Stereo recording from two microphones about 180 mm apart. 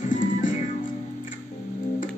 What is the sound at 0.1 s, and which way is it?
Music, 45° left (ahead or behind).